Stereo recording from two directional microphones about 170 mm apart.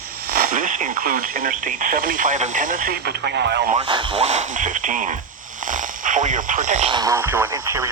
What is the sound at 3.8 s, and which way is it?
Speech, 30° right (ahead or behind).